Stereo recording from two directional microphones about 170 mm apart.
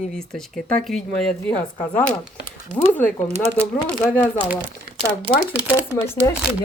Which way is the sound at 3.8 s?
5° left (ahead or behind).